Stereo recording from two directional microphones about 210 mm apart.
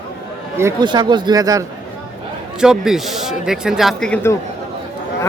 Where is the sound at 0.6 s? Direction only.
15° right (ahead or behind).